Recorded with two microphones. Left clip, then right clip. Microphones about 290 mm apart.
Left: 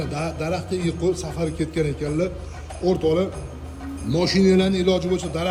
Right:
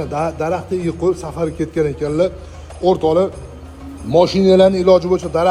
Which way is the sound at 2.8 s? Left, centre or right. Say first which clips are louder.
Right 7 dB; centre.